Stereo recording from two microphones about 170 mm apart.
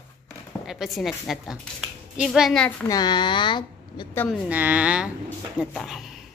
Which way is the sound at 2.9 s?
25° left (ahead or behind).